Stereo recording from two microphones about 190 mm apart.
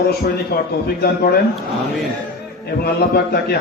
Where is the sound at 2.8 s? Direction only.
55° left (ahead or behind).